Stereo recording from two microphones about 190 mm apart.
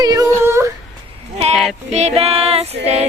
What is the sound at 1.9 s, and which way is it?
Female singing, 35° right (ahead or behind).